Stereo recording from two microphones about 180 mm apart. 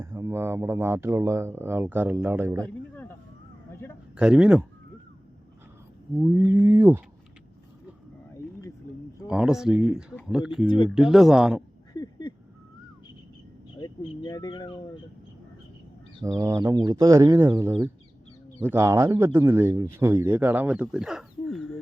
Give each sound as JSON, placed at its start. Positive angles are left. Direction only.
{"t": 0.0, "sound": "speech", "side_deg": -15}
{"t": 2.9, "sound": "a sound", "side_deg": 10}
{"t": 4.2, "sound": "speech", "side_deg": -5}
{"t": 6.1, "sound": "speech", "side_deg": -10}
{"t": 8.9, "sound": "wild animals", "side_deg": 50}
{"t": 9.2, "sound": "speech", "side_deg": -5}
{"t": 11.9, "sound": "a sound", "side_deg": 25}
{"t": 13.7, "sound": "speech", "side_deg": 25}
{"t": 16.2, "sound": "speech", "side_deg": -20}